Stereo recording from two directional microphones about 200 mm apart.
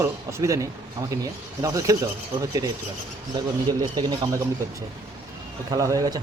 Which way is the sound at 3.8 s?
20° right (ahead or behind).